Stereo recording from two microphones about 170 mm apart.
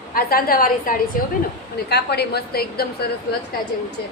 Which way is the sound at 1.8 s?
70° left (ahead or behind).